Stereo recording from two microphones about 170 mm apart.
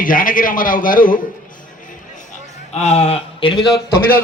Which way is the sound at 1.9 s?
50° left (ahead or behind).